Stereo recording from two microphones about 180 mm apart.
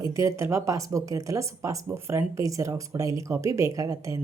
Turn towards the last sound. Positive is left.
turn(degrees=-20)  # may be behind; listen again after turning